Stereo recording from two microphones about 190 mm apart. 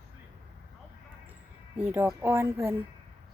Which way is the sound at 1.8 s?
10° right (ahead or behind).